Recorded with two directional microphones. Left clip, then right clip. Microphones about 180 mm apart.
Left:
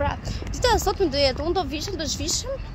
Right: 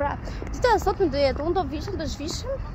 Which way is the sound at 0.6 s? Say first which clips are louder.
Even; 15° left (ahead or behind).